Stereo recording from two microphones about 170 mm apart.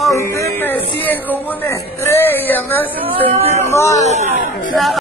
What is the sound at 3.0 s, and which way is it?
Speech, 30° right (ahead or behind).